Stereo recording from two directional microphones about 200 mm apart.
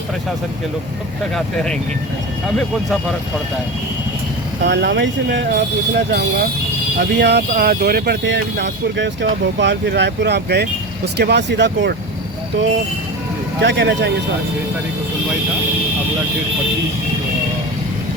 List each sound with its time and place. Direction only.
4.6 s speech: 65° right (ahead or behind)
13.6 s speech: 60° right (ahead or behind)